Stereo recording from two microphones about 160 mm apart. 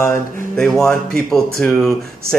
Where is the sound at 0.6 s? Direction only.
5° left (ahead or behind).